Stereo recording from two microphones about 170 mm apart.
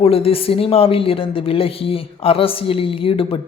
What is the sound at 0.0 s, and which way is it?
A man's voice, 35° left (ahead or behind).